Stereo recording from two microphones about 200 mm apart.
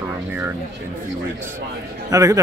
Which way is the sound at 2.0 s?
15° right (ahead or behind).